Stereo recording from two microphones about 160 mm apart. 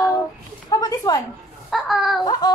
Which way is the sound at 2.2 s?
25° left (ahead or behind).